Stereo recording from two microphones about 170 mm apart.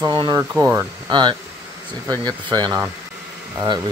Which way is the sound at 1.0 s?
25° right (ahead or behind).